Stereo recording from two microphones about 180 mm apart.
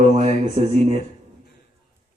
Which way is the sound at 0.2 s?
35° right (ahead or behind).